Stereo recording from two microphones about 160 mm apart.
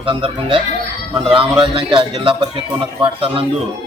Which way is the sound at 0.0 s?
35° right (ahead or behind).